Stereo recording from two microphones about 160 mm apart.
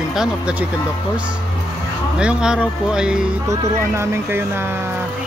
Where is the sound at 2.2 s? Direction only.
5° right (ahead or behind).